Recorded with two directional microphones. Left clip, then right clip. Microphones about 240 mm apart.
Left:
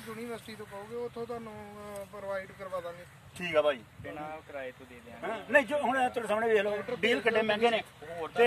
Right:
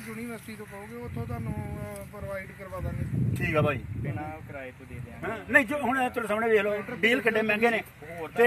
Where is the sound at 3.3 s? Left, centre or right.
Centre.